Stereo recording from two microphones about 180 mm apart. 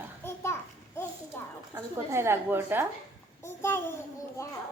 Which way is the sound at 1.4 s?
15° left (ahead or behind).